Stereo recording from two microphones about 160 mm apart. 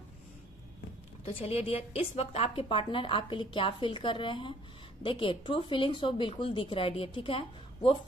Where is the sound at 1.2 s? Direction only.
40° left (ahead or behind).